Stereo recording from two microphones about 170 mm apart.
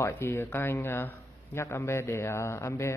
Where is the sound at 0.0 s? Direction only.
15° left (ahead or behind).